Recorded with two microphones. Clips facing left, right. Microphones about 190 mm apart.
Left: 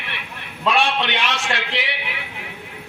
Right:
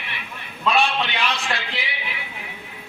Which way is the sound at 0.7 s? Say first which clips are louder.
Left 1 dB; 90° left.